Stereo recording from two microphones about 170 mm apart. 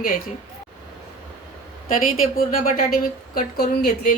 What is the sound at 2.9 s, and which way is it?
Speech, 60° left (ahead or behind).